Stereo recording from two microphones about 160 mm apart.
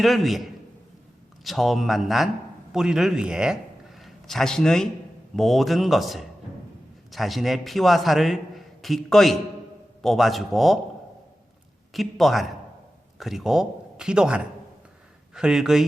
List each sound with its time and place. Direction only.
0.0 s a man's voice: centre (ahead or behind)
1.5 s a man's voice: centre (ahead or behind)
11.9 s a man's voice: centre (ahead or behind)